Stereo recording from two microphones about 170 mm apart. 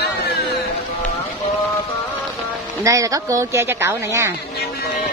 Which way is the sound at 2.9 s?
20° right (ahead or behind).